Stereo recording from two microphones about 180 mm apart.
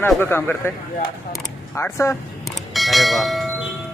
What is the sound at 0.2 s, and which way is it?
Speech, 10° left (ahead or behind).